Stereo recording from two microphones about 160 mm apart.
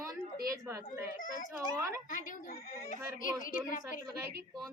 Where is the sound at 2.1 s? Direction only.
55° left (ahead or behind).